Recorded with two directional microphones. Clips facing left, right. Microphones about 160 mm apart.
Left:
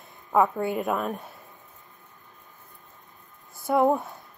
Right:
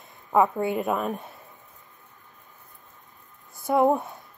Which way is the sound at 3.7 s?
Centre (ahead or behind).